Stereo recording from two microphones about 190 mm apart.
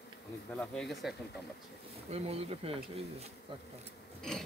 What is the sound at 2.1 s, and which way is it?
Speech, 30° right (ahead or behind).